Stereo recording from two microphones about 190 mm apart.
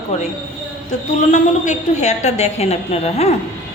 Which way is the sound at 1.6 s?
40° left (ahead or behind).